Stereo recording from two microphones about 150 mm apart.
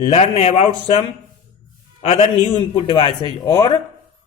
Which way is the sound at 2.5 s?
30° left (ahead or behind).